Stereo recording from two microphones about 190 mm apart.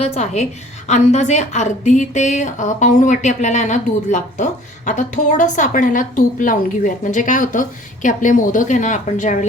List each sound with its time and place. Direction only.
0.0 s a woman's voice: 35° left (ahead or behind)